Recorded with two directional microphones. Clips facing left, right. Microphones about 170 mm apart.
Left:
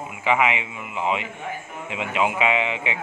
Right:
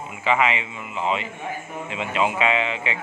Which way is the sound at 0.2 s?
15° left (ahead or behind).